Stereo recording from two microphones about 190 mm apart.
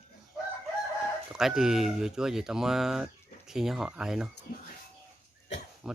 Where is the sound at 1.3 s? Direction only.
Centre (ahead or behind).